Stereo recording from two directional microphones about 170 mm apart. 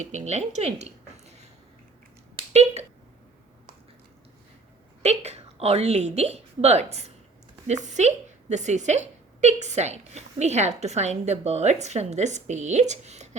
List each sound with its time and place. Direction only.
0.0 s speech: 45° right (ahead or behind)
2.5 s speech: 40° right (ahead or behind)
5.0 s a woman's voice: 40° right (ahead or behind)